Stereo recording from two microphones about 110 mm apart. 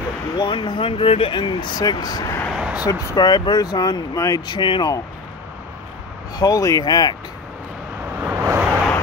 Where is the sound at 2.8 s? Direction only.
35° left (ahead or behind).